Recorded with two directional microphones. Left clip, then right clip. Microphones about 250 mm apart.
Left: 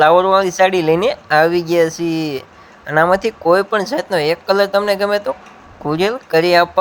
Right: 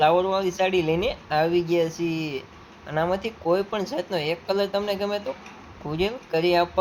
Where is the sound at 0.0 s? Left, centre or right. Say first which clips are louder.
Left 10 dB; left.